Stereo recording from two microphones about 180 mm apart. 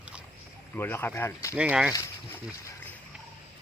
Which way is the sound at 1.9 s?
15° left (ahead or behind).